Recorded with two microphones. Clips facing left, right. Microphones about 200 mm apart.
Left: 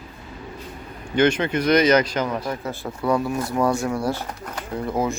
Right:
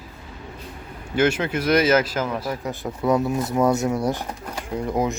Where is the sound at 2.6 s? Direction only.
20° right (ahead or behind).